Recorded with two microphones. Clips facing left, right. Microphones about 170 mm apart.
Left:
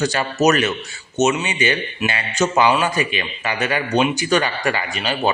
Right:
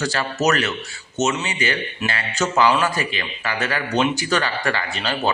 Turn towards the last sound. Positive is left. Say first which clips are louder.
# left 2 dB
turn(degrees=10)  # may be behind; listen again after turning